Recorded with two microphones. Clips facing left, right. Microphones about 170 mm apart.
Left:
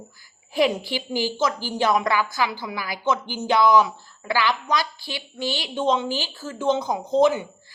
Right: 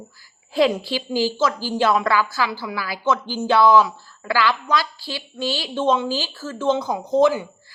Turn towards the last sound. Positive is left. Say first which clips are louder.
# right 1 dB
turn(degrees=20)  # may be behind; listen again after turning